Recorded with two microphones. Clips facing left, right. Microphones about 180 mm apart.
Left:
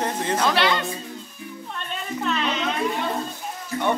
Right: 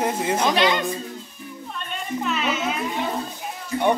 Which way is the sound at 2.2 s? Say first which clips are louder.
Even; 5° right (ahead or behind).